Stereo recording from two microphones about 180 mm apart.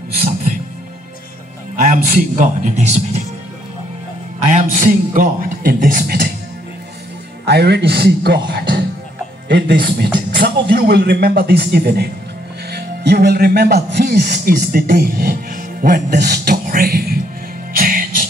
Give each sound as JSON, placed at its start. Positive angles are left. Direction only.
{"t": 1.8, "sound": "a man's voice", "side_deg": -50}
{"t": 4.5, "sound": "a man's voice", "side_deg": -45}
{"t": 7.4, "sound": "a man's voice", "side_deg": -65}
{"t": 9.5, "sound": "a man's voice", "side_deg": -65}
{"t": 16.6, "sound": "a man's voice", "side_deg": -50}
{"t": 17.7, "sound": "music", "side_deg": -50}